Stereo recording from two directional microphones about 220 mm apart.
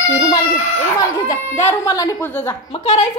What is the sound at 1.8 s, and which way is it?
Speech, 15° left (ahead or behind).